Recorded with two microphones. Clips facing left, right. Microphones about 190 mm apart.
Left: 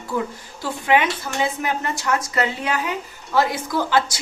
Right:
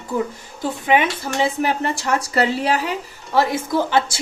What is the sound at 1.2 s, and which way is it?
A woman's voice, 30° right (ahead or behind).